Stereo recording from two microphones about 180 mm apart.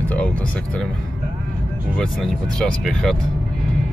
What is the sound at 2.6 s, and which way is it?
Speech, 5° left (ahead or behind).